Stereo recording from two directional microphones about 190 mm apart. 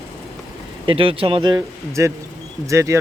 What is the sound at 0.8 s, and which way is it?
Speech, 30° right (ahead or behind).